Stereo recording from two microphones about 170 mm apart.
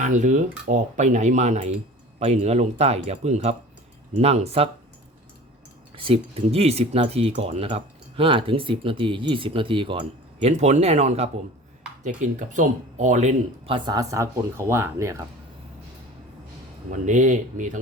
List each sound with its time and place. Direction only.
0.0 s speech: 45° right (ahead or behind)
6.0 s speech: 35° right (ahead or behind)
10.5 s speech: 40° right (ahead or behind)
13.7 s speech: 25° right (ahead or behind)
16.9 s speech: 45° right (ahead or behind)